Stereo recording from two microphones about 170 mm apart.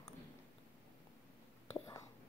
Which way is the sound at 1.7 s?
15° left (ahead or behind).